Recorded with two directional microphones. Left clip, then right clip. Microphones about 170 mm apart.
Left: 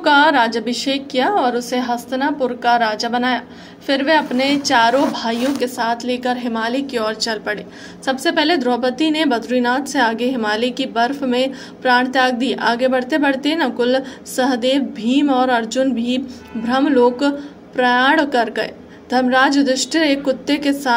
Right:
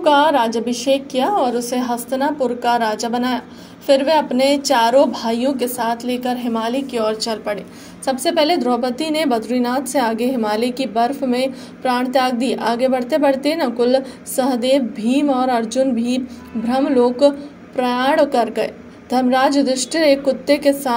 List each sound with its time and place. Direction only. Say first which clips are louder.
0.0 s a woman's voice: left 1 dB; 25° right (ahead or behind)